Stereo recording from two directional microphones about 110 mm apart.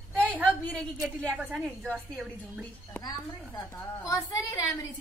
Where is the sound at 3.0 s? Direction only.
35° left (ahead or behind).